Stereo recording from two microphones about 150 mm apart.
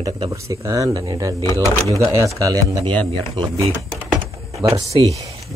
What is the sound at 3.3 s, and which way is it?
Speech, 35° right (ahead or behind).